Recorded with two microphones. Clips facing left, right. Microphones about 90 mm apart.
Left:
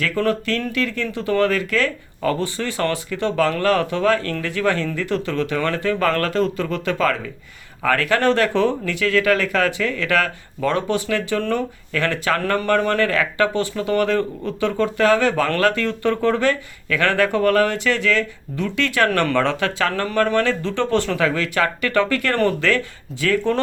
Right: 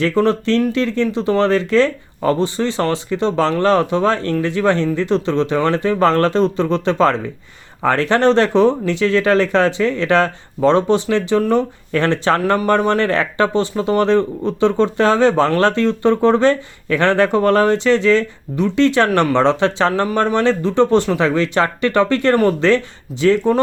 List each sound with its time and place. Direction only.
0.0 s speech: 25° right (ahead or behind)
11.9 s speech: 30° right (ahead or behind)